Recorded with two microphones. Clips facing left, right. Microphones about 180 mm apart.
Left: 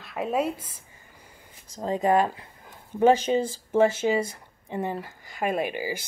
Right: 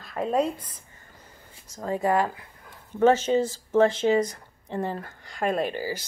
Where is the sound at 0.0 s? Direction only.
5° left (ahead or behind).